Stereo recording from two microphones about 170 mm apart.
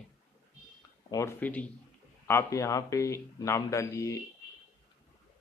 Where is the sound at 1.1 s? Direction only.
15° left (ahead or behind).